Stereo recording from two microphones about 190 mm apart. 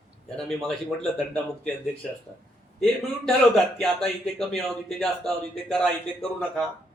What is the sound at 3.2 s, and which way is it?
Speech, centre (ahead or behind).